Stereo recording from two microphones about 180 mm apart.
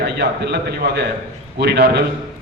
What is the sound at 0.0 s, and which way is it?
A man's voice, 65° right (ahead or behind).